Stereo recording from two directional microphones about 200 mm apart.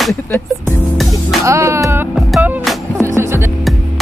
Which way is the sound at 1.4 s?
15° right (ahead or behind).